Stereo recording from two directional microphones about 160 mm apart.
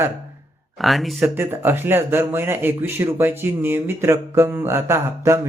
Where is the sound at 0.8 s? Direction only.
Centre (ahead or behind).